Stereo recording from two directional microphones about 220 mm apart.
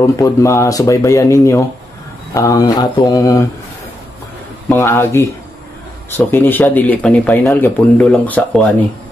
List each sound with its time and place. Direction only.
0.0 s speech: 15° left (ahead or behind)
4.6 s speech: 10° left (ahead or behind)